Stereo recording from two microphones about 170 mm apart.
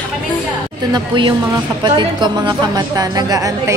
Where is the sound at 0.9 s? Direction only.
30° right (ahead or behind).